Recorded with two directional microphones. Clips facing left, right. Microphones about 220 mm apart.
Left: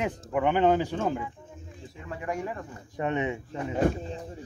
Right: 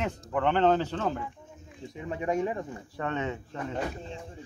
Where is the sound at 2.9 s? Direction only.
15° left (ahead or behind).